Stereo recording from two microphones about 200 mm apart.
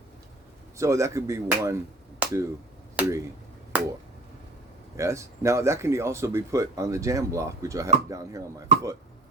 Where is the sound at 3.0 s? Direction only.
5° right (ahead or behind).